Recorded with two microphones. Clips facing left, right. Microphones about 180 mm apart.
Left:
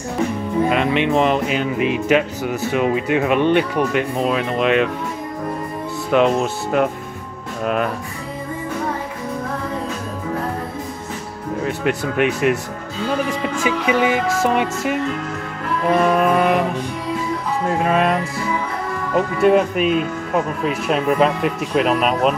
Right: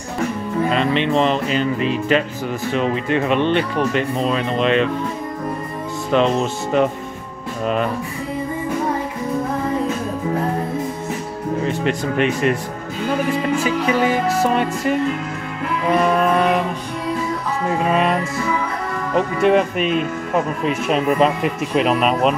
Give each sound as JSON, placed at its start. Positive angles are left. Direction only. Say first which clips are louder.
{"t": 0.7, "sound": "music", "louder": "even", "side_deg": 10}
{"t": 6.1, "sound": "music", "louder": "left 1 dB", "side_deg": 10}
{"t": 7.6, "sound": "speech", "louder": "even", "side_deg": 5}
{"t": 11.6, "sound": "speech", "louder": "left 1 dB", "side_deg": 5}
{"t": 12.2, "sound": "music", "louder": "left 1 dB", "side_deg": 10}
{"t": 13.7, "sound": "music", "louder": "left 3 dB", "side_deg": 10}
{"t": 16.0, "sound": "speech", "louder": "left 1 dB", "side_deg": 5}
{"t": 17.6, "sound": "speech", "louder": "even", "side_deg": 0}